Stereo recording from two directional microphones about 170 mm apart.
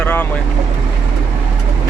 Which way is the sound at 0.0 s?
10° left (ahead or behind).